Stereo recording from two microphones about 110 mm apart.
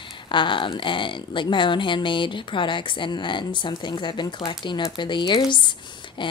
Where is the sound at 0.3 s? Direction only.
50° left (ahead or behind).